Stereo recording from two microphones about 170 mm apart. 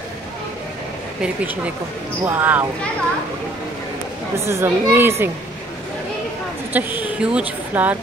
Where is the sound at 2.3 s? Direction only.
10° right (ahead or behind).